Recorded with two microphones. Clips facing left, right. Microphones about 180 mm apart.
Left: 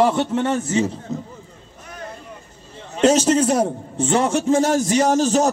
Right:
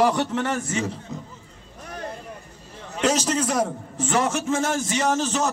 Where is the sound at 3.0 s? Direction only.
25° left (ahead or behind).